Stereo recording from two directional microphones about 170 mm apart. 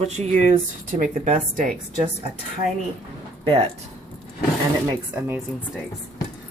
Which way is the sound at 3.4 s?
30° right (ahead or behind).